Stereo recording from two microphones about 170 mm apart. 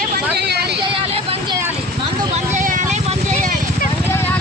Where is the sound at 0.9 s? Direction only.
35° right (ahead or behind).